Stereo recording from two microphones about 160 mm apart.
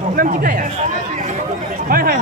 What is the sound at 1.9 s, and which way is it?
Speech, 65° right (ahead or behind).